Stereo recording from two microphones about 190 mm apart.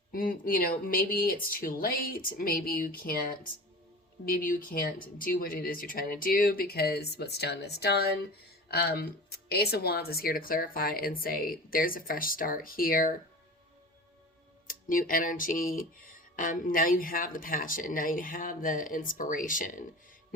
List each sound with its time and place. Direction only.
0.1 s speech: 45° left (ahead or behind)
14.7 s speech: 45° left (ahead or behind)